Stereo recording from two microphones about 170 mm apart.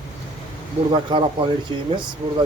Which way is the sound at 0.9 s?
30° right (ahead or behind).